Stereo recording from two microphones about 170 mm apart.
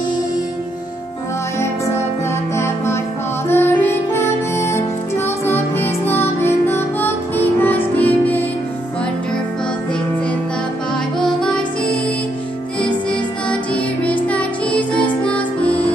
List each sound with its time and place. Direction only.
2.5 s music: 15° left (ahead or behind)
11.1 s music: 5° left (ahead or behind)